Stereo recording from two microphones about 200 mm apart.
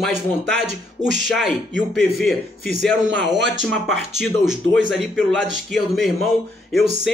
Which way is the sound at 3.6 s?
Centre (ahead or behind).